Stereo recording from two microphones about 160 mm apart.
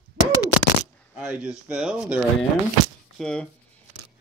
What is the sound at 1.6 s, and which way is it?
Speech, 5° right (ahead or behind).